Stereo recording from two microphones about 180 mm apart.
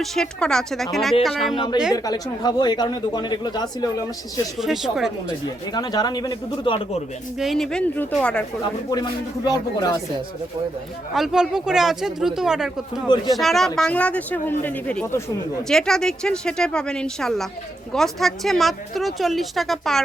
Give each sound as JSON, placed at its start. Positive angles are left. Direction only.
{"t": 0.0, "sound": "speech", "side_deg": 0}
{"t": 1.9, "sound": "speech", "side_deg": 20}
{"t": 4.5, "sound": "speech", "side_deg": 0}
{"t": 5.7, "sound": "speech", "side_deg": 20}
{"t": 7.3, "sound": "speech", "side_deg": 0}
{"t": 8.9, "sound": "speech", "side_deg": 20}
{"t": 11.1, "sound": "speech", "side_deg": 0}